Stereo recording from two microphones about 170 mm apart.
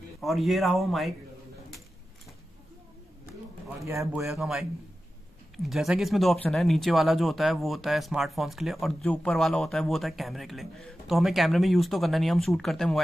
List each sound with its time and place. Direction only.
0.2 s speech: centre (ahead or behind)
3.8 s speech: 15° right (ahead or behind)
4.3 s speech: centre (ahead or behind)